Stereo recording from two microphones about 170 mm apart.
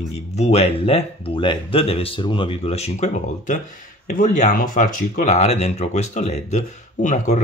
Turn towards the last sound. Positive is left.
turn(degrees=45)  # may be behind; listen again after turning